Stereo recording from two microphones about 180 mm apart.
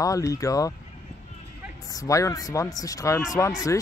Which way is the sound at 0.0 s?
20° left (ahead or behind).